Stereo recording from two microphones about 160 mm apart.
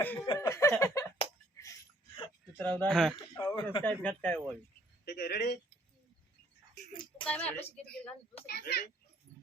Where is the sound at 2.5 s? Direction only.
10° left (ahead or behind).